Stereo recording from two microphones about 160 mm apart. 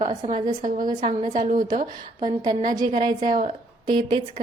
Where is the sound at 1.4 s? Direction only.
55° right (ahead or behind).